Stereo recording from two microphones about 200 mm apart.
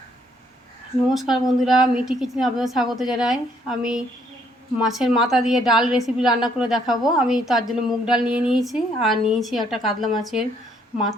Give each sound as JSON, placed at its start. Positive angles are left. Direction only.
{"t": 1.1, "sound": "a woman's voice", "side_deg": 0}